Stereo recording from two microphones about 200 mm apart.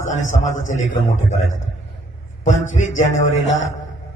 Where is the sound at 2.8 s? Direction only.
35° left (ahead or behind).